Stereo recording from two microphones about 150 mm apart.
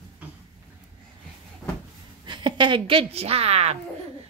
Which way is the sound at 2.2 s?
30° right (ahead or behind).